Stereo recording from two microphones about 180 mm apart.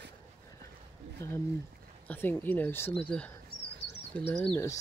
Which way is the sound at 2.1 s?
10° left (ahead or behind).